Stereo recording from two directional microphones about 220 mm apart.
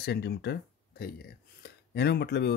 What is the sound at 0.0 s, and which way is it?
Speech, 50° left (ahead or behind).